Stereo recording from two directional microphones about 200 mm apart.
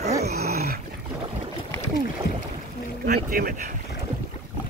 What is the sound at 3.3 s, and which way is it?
Speech, 45° right (ahead or behind).